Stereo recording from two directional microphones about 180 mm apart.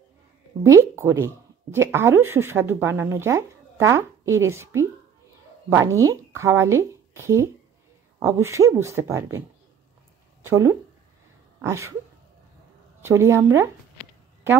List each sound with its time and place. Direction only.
0.7 s speech: 15° right (ahead or behind)
10.4 s speech: 15° right (ahead or behind)
13.0 s speech: 15° right (ahead or behind)